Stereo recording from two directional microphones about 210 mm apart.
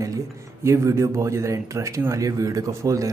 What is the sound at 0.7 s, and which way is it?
Speech, 15° right (ahead or behind).